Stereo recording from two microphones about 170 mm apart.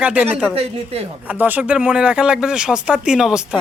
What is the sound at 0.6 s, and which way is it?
Speech, 35° right (ahead or behind).